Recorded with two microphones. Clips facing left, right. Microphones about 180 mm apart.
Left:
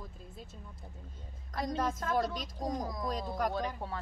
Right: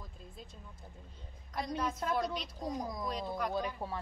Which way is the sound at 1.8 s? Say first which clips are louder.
Left 2 dB; 45° left (ahead or behind).